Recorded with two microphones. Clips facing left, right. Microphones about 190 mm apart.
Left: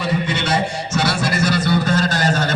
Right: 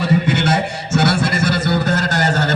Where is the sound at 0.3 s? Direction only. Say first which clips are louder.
Right 3 dB; 60° right (ahead or behind).